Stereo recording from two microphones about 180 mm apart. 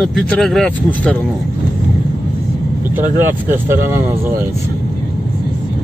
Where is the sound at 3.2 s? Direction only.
10° right (ahead or behind).